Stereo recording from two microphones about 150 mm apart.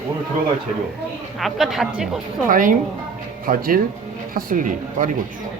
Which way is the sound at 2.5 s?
65° right (ahead or behind).